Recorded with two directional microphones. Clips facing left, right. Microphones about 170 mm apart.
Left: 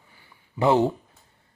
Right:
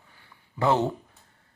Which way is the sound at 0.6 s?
15° left (ahead or behind).